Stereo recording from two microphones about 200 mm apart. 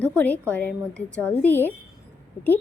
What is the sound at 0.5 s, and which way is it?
Speech, 5° left (ahead or behind).